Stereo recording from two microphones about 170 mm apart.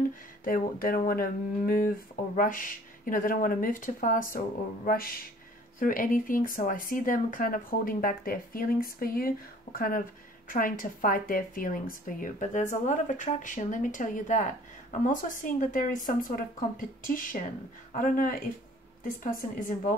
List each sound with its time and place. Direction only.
0.5 s speech: 55° left (ahead or behind)